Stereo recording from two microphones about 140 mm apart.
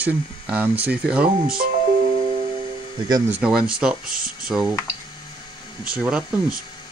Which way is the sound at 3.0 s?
25° right (ahead or behind).